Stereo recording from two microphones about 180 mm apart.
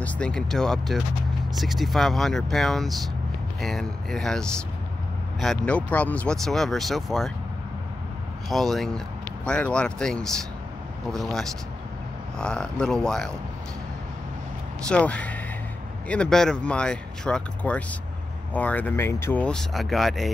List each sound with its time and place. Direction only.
0.0 s speech: 5° left (ahead or behind)
8.5 s speech: centre (ahead or behind)
14.9 s speech: 5° left (ahead or behind)